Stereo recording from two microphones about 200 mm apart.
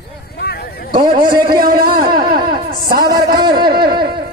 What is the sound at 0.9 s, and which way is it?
Speech, 25° right (ahead or behind).